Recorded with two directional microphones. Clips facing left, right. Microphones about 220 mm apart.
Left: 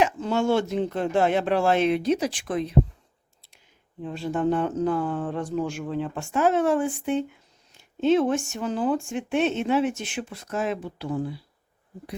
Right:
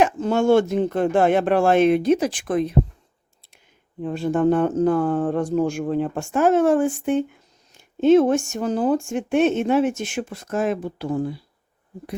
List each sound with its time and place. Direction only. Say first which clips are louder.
0.0 s speech: right 4 dB; 50° right (ahead or behind)
4.0 s speech: right 6 dB; 50° right (ahead or behind)